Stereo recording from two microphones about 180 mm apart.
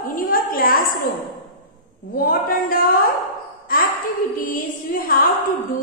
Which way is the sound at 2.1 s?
55° left (ahead or behind).